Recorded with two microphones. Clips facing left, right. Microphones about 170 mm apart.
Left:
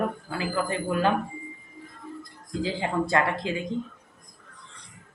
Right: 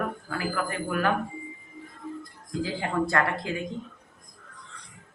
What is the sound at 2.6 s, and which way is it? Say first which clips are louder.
Speech: left 1 dB; 20° left (ahead or behind).